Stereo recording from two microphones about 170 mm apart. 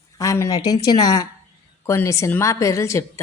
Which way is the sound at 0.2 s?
20° left (ahead or behind).